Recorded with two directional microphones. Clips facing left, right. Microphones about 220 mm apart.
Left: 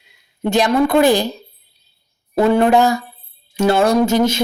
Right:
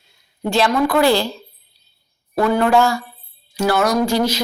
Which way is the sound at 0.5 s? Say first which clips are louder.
Left 3 dB; 20° left (ahead or behind).